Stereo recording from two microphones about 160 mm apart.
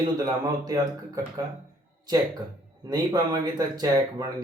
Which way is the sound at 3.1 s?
25° right (ahead or behind).